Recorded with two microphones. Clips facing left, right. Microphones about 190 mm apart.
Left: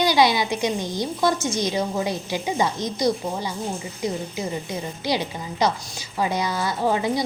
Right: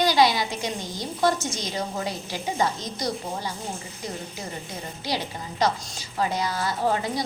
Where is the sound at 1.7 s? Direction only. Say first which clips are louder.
Left 5 dB; 15° left (ahead or behind).